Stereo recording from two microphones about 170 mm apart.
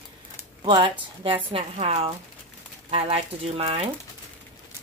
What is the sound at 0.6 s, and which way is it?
A woman's voice, 30° right (ahead or behind).